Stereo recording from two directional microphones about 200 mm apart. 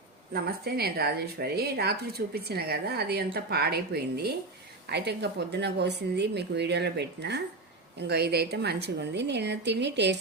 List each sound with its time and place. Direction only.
0.3 s speech: 50° right (ahead or behind)